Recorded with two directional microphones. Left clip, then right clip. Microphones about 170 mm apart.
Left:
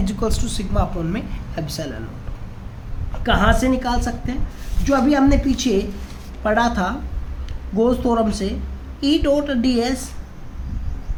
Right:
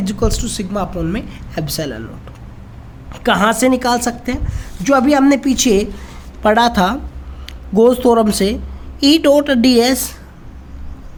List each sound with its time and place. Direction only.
0.0 s a woman's voice: 35° right (ahead or behind)
3.2 s a woman's voice: 70° right (ahead or behind)
6.4 s a woman's voice: 55° right (ahead or behind)